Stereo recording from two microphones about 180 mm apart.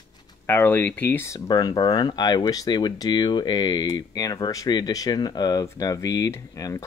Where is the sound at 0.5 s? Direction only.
10° left (ahead or behind).